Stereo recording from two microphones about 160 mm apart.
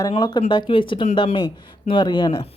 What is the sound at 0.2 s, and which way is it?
Speech, 30° left (ahead or behind).